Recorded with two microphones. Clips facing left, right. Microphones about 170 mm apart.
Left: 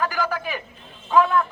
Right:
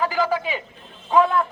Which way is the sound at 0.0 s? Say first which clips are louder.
Right 3 dB; 20° right (ahead or behind).